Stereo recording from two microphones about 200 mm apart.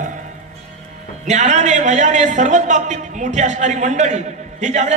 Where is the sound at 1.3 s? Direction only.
35° right (ahead or behind).